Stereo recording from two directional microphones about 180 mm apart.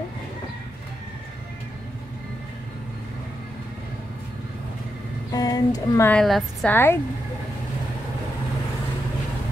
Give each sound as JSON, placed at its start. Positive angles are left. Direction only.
{"t": 5.3, "sound": "a sound", "side_deg": 20}
{"t": 6.0, "sound": "a woman's voice", "side_deg": 5}
{"t": 6.7, "sound": "speech", "side_deg": 10}